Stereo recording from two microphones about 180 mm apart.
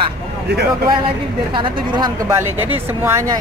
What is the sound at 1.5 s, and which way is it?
Speech, 25° right (ahead or behind).